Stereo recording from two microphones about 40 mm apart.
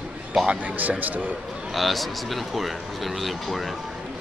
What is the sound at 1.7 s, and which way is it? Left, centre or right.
Speech, centre.